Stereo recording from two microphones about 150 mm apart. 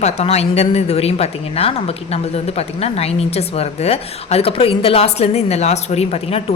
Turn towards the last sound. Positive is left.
turn(degrees=40)  # may be behind; listen again after turning